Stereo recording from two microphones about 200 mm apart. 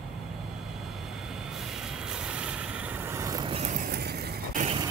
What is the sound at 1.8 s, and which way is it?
Vehicle, 5° right (ahead or behind).